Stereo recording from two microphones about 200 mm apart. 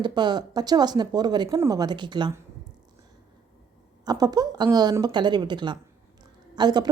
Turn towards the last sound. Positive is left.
turn(degrees=-20)  # may be behind; listen again after turning